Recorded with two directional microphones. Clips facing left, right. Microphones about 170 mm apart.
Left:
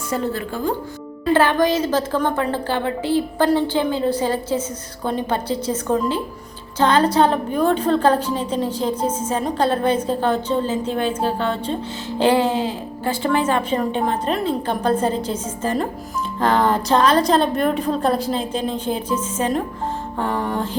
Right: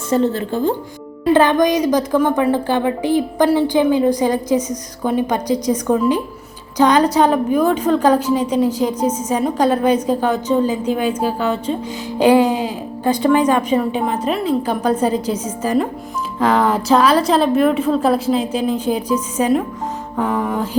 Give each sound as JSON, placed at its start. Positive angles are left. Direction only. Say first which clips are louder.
{"t": 0.1, "sound": "a woman's voice", "louder": "right 7 dB", "side_deg": -25}